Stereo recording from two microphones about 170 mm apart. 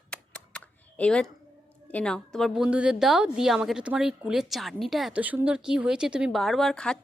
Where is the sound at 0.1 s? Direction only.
5° left (ahead or behind).